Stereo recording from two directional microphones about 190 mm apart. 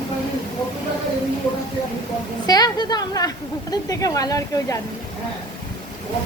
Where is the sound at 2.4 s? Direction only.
20° left (ahead or behind).